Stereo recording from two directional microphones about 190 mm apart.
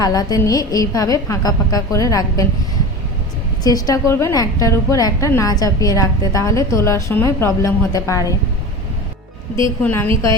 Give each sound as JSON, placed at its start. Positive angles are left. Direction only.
{"t": 0.0, "sound": "a woman's voice", "side_deg": 20}
{"t": 3.6, "sound": "a woman's voice", "side_deg": 20}
{"t": 9.8, "sound": "a woman's voice", "side_deg": 10}